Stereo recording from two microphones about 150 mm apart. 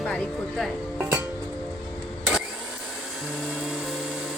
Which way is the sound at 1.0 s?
20° right (ahead or behind).